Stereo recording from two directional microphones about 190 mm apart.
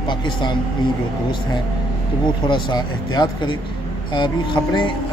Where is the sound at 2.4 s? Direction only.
25° left (ahead or behind).